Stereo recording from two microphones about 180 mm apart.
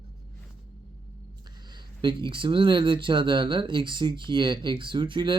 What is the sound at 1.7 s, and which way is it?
Speech, 25° right (ahead or behind).